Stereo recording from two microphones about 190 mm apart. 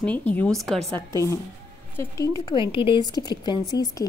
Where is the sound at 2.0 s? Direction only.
15° left (ahead or behind).